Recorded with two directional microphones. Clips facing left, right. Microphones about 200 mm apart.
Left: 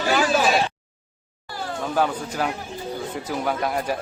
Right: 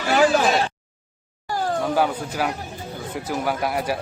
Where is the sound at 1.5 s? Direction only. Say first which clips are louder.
Right 7 dB; 45° right (ahead or behind).